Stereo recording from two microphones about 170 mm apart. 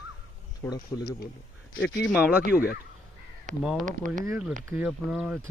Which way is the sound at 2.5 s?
60° left (ahead or behind).